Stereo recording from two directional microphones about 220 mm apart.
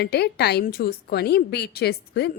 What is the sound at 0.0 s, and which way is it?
A woman's voice, 45° left (ahead or behind).